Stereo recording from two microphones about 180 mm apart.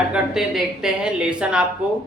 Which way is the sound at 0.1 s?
Centre (ahead or behind).